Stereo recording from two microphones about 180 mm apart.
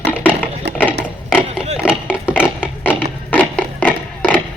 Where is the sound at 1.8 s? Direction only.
5° right (ahead or behind).